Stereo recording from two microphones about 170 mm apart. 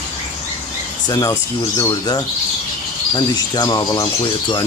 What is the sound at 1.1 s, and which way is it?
Speech, 20° left (ahead or behind).